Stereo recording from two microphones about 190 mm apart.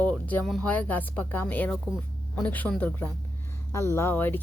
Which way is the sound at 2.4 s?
10° left (ahead or behind).